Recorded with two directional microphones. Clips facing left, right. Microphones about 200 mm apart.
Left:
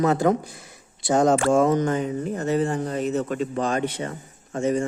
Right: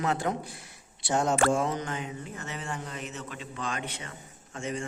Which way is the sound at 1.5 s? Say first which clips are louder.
Left 9 dB; 45° left (ahead or behind).